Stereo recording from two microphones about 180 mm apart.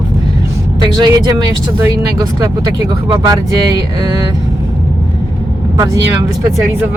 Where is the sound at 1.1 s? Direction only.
20° right (ahead or behind).